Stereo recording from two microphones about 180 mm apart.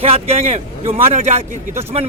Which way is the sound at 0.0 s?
35° right (ahead or behind).